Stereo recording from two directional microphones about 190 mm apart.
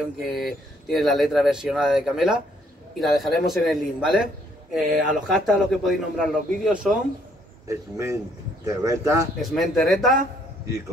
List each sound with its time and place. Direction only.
0.0 s a man's voice: centre (ahead or behind)
7.6 s speech: 15° right (ahead or behind)
9.4 s a man's voice: centre (ahead or behind)